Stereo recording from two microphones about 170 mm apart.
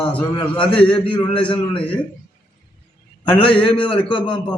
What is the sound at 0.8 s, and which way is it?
A man's voice, 30° left (ahead or behind).